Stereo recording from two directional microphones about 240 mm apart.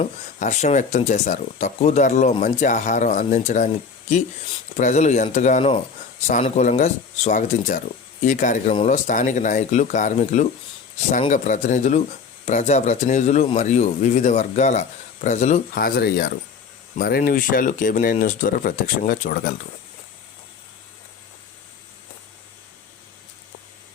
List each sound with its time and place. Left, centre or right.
0.0 s speech: left
4.8 s speech: left